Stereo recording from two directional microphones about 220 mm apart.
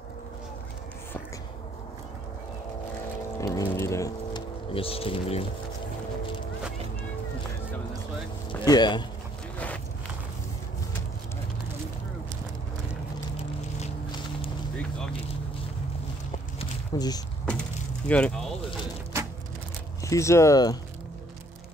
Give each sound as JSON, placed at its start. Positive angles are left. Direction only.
{"t": 3.3, "sound": "speech", "side_deg": 15}
{"t": 8.5, "sound": "speech", "side_deg": 20}
{"t": 13.7, "sound": "a sound", "side_deg": 25}
{"t": 16.5, "sound": "walk", "side_deg": 20}
{"t": 18.0, "sound": "speech", "side_deg": 5}
{"t": 20.0, "sound": "speech", "side_deg": 15}